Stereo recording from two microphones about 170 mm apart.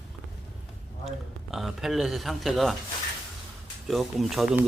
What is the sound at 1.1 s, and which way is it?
Speech, centre (ahead or behind).